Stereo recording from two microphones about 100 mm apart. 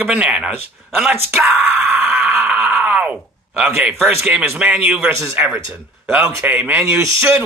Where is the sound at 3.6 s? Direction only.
15° right (ahead or behind).